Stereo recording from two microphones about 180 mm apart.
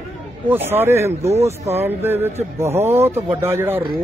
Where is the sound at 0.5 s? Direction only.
10° right (ahead or behind).